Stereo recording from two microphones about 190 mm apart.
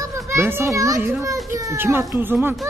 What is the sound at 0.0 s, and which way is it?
A child's voice, 15° right (ahead or behind).